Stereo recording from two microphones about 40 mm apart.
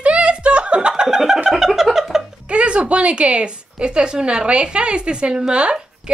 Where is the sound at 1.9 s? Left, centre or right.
Centre.